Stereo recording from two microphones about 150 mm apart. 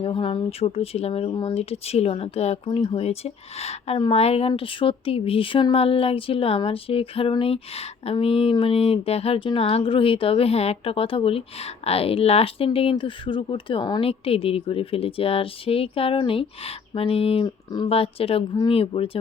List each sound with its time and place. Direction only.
0.0 s speech: 35° left (ahead or behind)
17.4 s speech: 30° left (ahead or behind)